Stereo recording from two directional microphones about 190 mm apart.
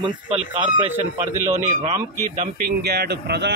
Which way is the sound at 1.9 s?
40° right (ahead or behind).